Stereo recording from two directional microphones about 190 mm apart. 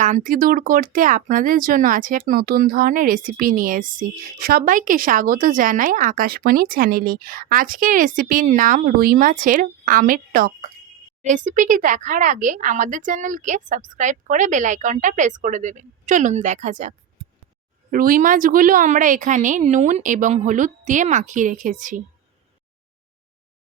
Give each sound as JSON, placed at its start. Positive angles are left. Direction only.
{"t": 0.0, "sound": "speech", "side_deg": -45}
{"t": 17.9, "sound": "speech", "side_deg": -45}